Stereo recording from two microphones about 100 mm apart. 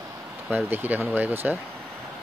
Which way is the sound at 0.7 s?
20° right (ahead or behind).